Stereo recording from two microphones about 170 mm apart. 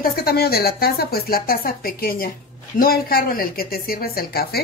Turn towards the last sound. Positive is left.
turn(degrees=65)  # may be behind; listen again after turning